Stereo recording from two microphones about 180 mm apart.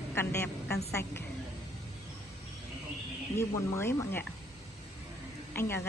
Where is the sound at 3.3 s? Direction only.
15° left (ahead or behind).